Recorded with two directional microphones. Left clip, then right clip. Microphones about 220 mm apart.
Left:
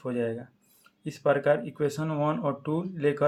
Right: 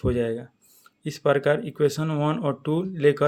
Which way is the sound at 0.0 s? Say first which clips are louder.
Right 5 dB; 40° right (ahead or behind).